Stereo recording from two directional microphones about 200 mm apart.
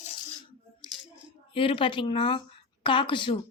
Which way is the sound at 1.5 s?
25° left (ahead or behind).